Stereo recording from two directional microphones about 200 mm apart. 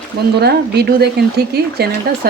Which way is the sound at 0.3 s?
55° right (ahead or behind).